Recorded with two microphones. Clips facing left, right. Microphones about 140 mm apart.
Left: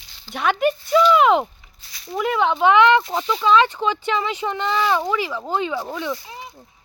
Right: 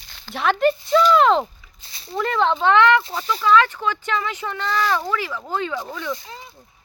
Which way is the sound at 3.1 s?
30° left (ahead or behind).